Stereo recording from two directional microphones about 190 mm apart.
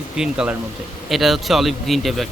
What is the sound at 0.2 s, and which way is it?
A man's voice, 5° right (ahead or behind).